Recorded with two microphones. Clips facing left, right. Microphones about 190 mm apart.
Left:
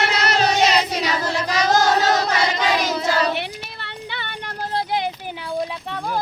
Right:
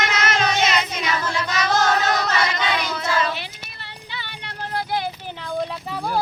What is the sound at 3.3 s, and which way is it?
Child singing, 65° left (ahead or behind).